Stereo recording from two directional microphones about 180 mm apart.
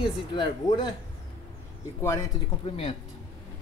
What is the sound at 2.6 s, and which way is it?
Speech, 35° left (ahead or behind).